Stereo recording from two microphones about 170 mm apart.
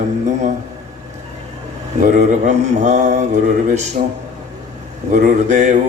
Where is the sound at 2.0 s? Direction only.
45° right (ahead or behind).